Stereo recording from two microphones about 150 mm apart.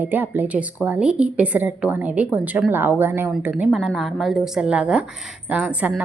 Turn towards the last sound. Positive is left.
turn(degrees=-10)  # may be behind; listen again after turning